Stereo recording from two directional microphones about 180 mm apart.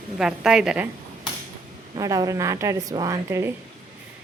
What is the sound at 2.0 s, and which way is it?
A woman's voice, 20° right (ahead or behind).